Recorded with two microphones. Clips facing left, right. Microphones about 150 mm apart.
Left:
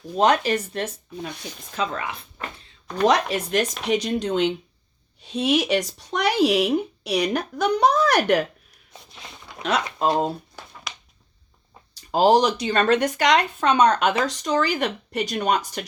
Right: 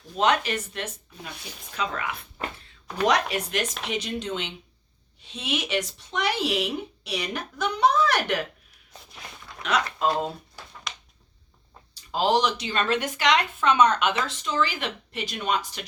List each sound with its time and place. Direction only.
0.2 s speech: 35° left (ahead or behind)
2.8 s speech: 5° right (ahead or behind)
3.8 s speech: 40° left (ahead or behind)
9.1 s a sound: 25° left (ahead or behind)
10.0 s speech: 40° left (ahead or behind)
10.9 s a sound: 5° left (ahead or behind)
12.1 s speech: 45° left (ahead or behind)